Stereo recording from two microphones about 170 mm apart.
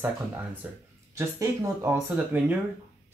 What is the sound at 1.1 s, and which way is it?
Speech, 20° right (ahead or behind).